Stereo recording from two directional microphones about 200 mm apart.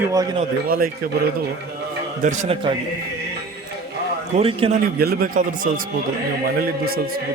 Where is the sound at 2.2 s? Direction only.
35° right (ahead or behind).